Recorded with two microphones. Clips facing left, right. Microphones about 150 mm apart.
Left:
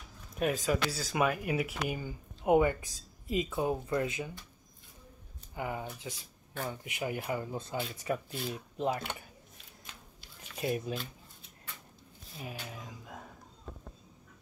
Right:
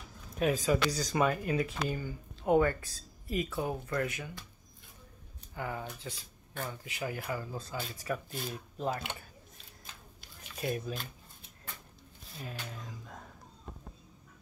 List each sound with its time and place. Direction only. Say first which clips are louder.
0.4 s speech: right 2 dB; centre (ahead or behind); by 4.3 s 20° left (ahead or behind)
5.5 s speech: left 1 dB; 15° left (ahead or behind)
10.6 s speech: left 2 dB; 20° left (ahead or behind)
12.4 s a sound: even; 10° left (ahead or behind)